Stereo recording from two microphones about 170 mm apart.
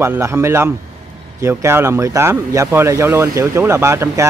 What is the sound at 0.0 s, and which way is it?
Speech, 15° right (ahead or behind).